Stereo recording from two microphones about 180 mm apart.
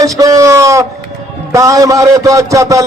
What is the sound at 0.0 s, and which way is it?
A man's voice, 20° right (ahead or behind).